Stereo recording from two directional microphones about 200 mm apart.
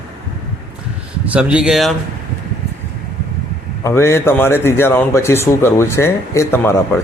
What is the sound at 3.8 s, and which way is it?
Speech, 15° left (ahead or behind).